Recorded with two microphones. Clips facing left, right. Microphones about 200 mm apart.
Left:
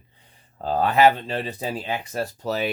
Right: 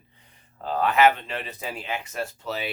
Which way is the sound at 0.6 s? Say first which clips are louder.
Left 2 dB; 35° left (ahead or behind).